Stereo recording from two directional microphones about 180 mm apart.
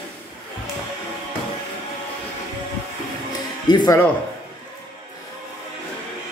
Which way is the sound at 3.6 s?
20° left (ahead or behind).